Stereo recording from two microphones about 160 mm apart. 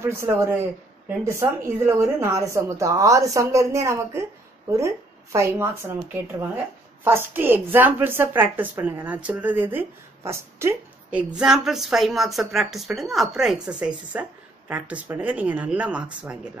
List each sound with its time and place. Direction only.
0.0 s a woman's voice: 15° right (ahead or behind)
7.1 s a woman's voice: 15° right (ahead or behind)